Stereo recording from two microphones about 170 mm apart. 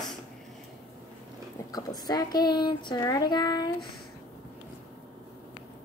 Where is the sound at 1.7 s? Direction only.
20° left (ahead or behind).